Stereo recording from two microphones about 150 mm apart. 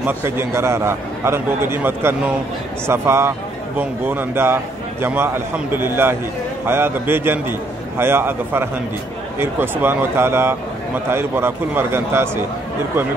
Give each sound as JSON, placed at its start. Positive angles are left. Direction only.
{"t": 0.0, "sound": "a man's voice", "side_deg": -15}